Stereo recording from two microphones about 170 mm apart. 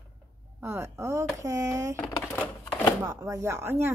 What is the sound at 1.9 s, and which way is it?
Typewriter, 5° left (ahead or behind).